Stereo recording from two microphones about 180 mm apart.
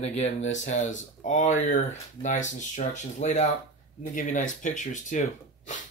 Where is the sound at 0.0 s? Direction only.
35° left (ahead or behind).